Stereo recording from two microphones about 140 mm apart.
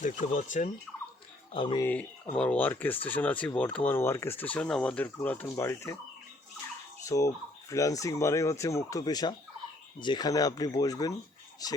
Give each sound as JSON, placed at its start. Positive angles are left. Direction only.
{"t": 0.0, "sound": "turkey", "side_deg": 65}
{"t": 1.5, "sound": "speech", "side_deg": 35}
{"t": 1.8, "sound": "speech", "side_deg": 10}
{"t": 7.0, "sound": "speech", "side_deg": 25}